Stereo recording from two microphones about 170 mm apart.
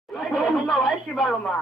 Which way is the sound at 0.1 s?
Centre (ahead or behind).